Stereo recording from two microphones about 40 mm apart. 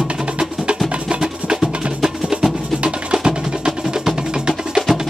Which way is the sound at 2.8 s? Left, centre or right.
Right.